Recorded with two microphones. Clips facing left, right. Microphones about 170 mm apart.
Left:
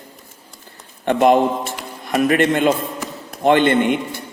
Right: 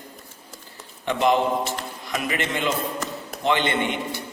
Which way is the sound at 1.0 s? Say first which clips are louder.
Left 6 dB; 55° left (ahead or behind).